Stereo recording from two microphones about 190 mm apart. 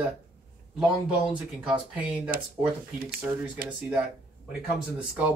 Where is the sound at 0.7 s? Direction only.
5° right (ahead or behind).